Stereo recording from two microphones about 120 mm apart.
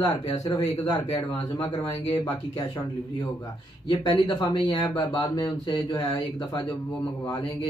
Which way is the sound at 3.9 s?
35° left (ahead or behind).